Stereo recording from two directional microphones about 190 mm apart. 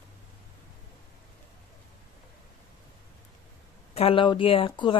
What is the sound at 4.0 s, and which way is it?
Speech, 30° left (ahead or behind).